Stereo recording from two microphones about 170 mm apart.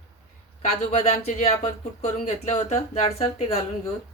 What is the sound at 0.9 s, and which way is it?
Speech, 40° left (ahead or behind).